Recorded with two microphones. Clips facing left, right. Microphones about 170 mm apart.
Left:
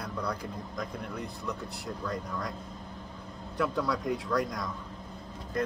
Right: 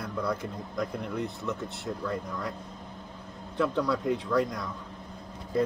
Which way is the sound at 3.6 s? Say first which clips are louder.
Right 3 dB; centre (ahead or behind).